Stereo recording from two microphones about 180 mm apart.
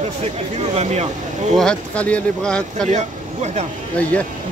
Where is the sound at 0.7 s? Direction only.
35° right (ahead or behind).